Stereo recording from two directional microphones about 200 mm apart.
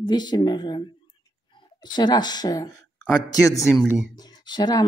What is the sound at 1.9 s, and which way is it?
Speech, 20° left (ahead or behind).